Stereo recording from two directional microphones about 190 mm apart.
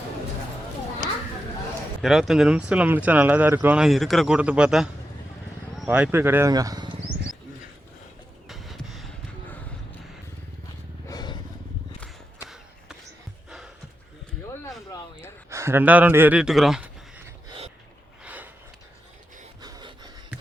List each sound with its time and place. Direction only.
2.0 s speech: centre (ahead or behind); by 6.9 s 20° right (ahead or behind)
8.4 s a sound: centre (ahead or behind)
11.1 s vehicle: 20° left (ahead or behind)
15.4 s speech: 15° right (ahead or behind)
18.2 s gasp: 10° right (ahead or behind)
19.6 s a sound: 20° right (ahead or behind)